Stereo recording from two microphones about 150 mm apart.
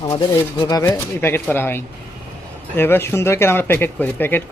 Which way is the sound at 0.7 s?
20° left (ahead or behind).